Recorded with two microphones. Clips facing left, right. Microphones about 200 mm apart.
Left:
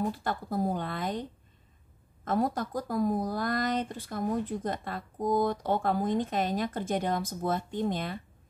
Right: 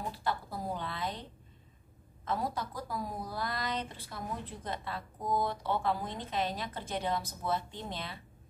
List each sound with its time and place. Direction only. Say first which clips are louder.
0.1 s speech: left 4 dB; 50° left (ahead or behind)
2.2 s speech: left 6 dB; 50° left (ahead or behind)